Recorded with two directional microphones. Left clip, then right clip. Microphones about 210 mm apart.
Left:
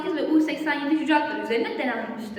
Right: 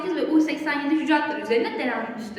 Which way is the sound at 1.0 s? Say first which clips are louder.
Even; 10° left (ahead or behind).